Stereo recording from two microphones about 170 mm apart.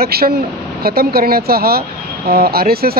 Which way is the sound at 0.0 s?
65° right (ahead or behind).